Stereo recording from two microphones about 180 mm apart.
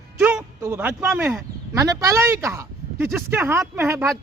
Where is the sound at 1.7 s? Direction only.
20° right (ahead or behind).